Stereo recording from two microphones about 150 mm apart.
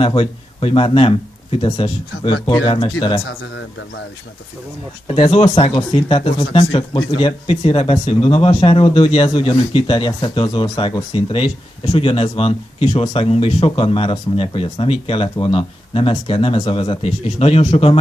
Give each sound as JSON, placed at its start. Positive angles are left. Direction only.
{"t": 0.0, "sound": "speech", "side_deg": 35}
{"t": 5.0, "sound": "speech", "side_deg": 40}